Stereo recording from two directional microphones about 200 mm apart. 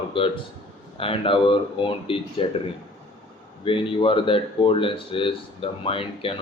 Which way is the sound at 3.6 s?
25° left (ahead or behind).